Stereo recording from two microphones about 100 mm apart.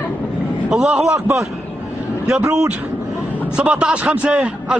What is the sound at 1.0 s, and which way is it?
Speech, 30° right (ahead or behind).